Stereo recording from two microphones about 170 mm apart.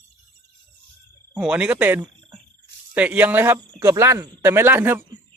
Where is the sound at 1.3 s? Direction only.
5° right (ahead or behind).